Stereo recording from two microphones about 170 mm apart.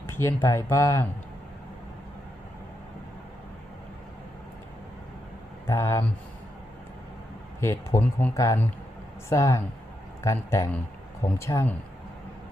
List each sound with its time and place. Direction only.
0.1 s speech: 15° left (ahead or behind)
5.6 s speech: 15° left (ahead or behind)
7.6 s speech: 15° left (ahead or behind)